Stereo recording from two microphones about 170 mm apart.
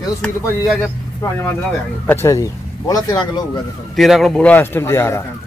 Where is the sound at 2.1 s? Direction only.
15° left (ahead or behind).